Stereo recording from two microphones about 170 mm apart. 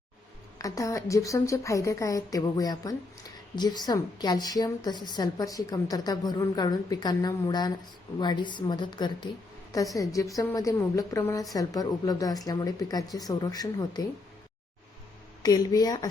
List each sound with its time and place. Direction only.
0.6 s a woman's voice: 20° left (ahead or behind)
15.4 s a woman's voice: 25° left (ahead or behind)